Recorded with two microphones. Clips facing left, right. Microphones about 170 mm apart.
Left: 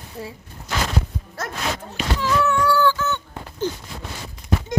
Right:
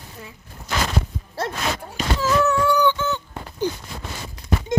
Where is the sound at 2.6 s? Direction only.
20° right (ahead or behind).